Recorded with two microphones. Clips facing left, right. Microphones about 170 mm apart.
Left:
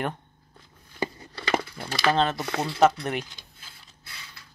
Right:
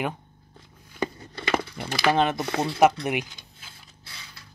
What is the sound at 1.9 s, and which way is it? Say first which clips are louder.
Speech: right 1 dB; 15° right (ahead or behind).